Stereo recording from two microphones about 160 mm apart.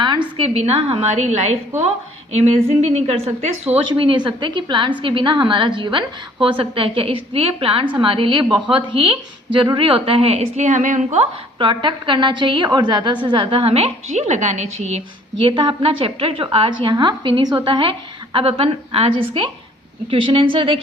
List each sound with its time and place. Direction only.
0.5 s a woman's voice: 40° right (ahead or behind)
11.6 s a woman's voice: 30° right (ahead or behind)
15.4 s a woman's voice: 30° right (ahead or behind)